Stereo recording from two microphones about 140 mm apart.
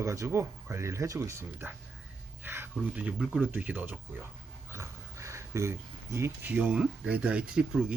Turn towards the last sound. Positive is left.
turn(degrees=-5)  # may be behind; listen again after turning